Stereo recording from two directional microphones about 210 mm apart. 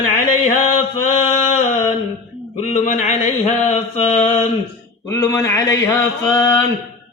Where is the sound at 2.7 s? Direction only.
35° left (ahead or behind).